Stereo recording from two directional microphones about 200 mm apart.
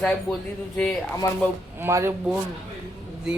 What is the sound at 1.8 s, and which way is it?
Speech, 15° right (ahead or behind).